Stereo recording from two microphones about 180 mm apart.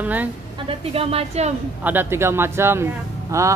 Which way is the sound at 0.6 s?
35° right (ahead or behind).